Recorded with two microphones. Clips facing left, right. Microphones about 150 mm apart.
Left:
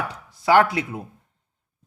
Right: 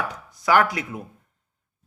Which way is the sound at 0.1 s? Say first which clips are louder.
Left 3 dB; 30° left (ahead or behind).